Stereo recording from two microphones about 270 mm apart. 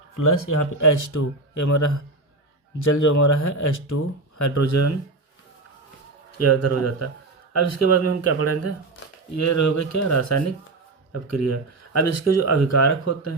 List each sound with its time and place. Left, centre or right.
0.8 s speech: left
6.4 s speech: left
9.3 s speech: left